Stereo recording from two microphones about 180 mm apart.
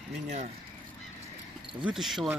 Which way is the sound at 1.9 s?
Centre (ahead or behind).